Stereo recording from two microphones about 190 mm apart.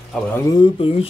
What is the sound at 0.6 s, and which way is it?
Speech, 30° left (ahead or behind).